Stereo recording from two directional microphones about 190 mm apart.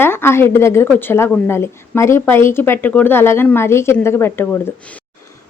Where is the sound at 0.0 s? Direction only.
10° left (ahead or behind).